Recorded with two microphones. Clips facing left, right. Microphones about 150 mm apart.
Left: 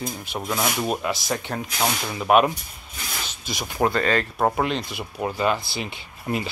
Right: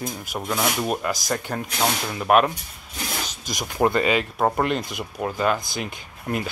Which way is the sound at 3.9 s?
10° right (ahead or behind).